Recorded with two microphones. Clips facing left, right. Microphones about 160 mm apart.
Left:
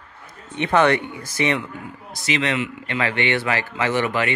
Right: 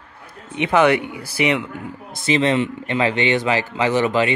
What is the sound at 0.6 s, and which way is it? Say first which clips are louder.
Speech: right 2 dB; 10° right (ahead or behind).